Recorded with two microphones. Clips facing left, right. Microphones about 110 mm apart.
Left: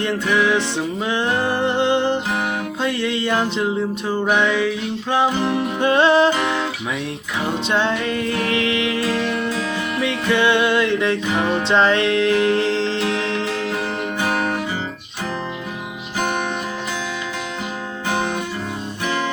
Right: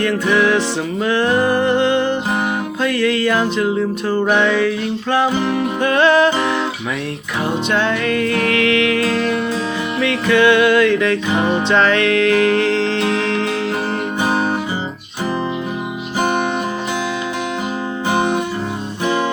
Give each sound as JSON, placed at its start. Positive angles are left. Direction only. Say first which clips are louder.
{"t": 0.0, "sound": "music", "louder": "right 3 dB", "side_deg": 20}
{"t": 7.7, "sound": "music", "louder": "right 2 dB", "side_deg": 25}
{"t": 9.2, "sound": "music", "louder": "right 4 dB", "side_deg": -30}
{"t": 10.1, "sound": "music", "louder": "right 5 dB", "side_deg": 25}
{"t": 11.3, "sound": "music", "louder": "right 3 dB", "side_deg": -25}
{"t": 11.7, "sound": "music", "louder": "right 1 dB", "side_deg": 25}
{"t": 13.1, "sound": "music", "louder": "right 4 dB", "side_deg": -35}
{"t": 14.2, "sound": "guitar", "louder": "right 3 dB", "side_deg": -25}
{"t": 18.1, "sound": "music", "louder": "right 5 dB", "side_deg": -15}